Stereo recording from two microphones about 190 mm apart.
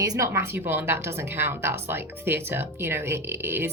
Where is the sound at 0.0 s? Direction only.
20° right (ahead or behind).